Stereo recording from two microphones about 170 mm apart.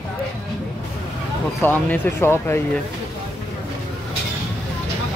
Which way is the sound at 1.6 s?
10° left (ahead or behind).